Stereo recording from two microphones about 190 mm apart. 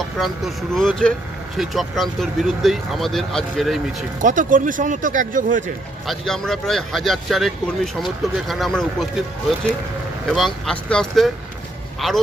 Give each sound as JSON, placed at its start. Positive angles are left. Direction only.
{"t": 0.0, "sound": "speech", "side_deg": 0}
{"t": 4.2, "sound": "speech", "side_deg": -45}
{"t": 6.1, "sound": "speech", "side_deg": 0}
{"t": 10.2, "sound": "speech", "side_deg": 0}